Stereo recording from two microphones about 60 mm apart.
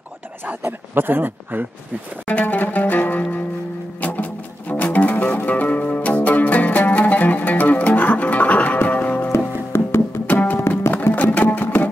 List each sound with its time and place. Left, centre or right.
0.6 s speech: right
2.2 s music: left
9.7 s music: left
10.3 s music: left
11.1 s sewing machine: left